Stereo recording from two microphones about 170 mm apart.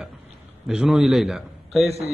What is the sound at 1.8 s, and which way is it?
Speech, 35° right (ahead or behind).